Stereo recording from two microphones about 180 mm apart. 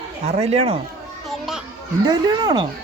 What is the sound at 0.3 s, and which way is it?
Speech, 35° right (ahead or behind).